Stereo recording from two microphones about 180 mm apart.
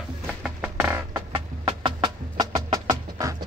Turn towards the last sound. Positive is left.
turn(degrees=-20)  # may be behind; listen again after turning